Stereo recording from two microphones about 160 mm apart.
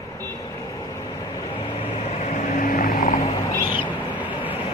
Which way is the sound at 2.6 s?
65° left (ahead or behind).